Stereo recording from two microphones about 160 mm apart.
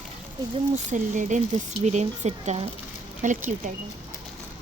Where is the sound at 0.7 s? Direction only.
50° right (ahead or behind).